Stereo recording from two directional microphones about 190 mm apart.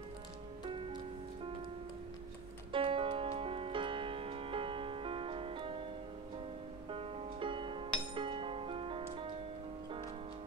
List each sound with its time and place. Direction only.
0.7 s music: 25° right (ahead or behind)
2.7 s music: 25° right (ahead or behind)
6.9 s music: 30° right (ahead or behind)